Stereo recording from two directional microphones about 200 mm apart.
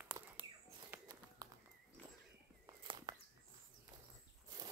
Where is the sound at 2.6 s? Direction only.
20° right (ahead or behind).